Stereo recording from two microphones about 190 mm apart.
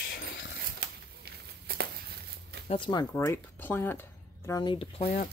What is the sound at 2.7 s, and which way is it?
Speech, 25° left (ahead or behind).